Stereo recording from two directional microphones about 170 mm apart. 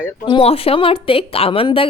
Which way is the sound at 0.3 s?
30° left (ahead or behind).